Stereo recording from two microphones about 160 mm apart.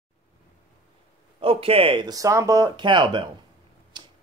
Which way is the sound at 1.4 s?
35° right (ahead or behind).